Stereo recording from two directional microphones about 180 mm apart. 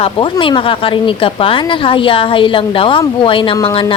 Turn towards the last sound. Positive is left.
turn(degrees=30)  # may be behind; listen again after turning